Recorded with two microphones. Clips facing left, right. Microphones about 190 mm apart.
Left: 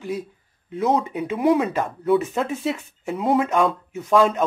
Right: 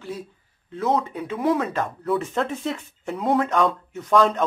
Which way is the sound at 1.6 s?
5° left (ahead or behind).